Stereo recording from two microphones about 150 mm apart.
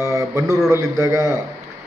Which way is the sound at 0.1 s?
20° right (ahead or behind).